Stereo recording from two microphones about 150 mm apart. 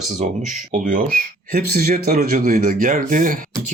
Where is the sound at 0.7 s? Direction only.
60° right (ahead or behind).